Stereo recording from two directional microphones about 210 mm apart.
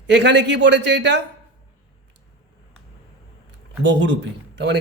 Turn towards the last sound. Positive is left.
turn(degrees=-55)  # may be behind; listen again after turning